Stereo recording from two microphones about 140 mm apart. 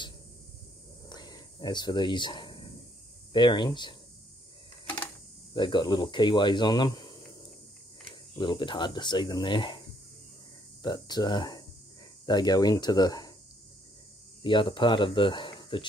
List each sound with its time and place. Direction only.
1.0 s a sound: 30° left (ahead or behind)
3.3 s speech: 35° left (ahead or behind)
5.5 s speech: 35° left (ahead or behind)
10.8 s speech: 30° left (ahead or behind)
14.4 s speech: 35° left (ahead or behind)